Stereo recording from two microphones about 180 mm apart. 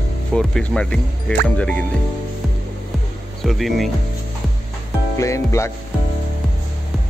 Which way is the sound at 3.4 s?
Centre (ahead or behind).